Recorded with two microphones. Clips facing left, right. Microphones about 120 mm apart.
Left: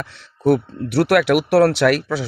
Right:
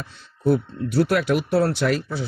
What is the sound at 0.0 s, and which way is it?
Speech, 90° left.